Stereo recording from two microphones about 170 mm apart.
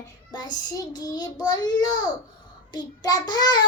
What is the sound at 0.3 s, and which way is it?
Child singing, 25° left (ahead or behind).